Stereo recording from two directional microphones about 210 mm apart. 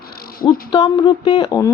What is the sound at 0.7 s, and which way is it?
Speech, 20° left (ahead or behind).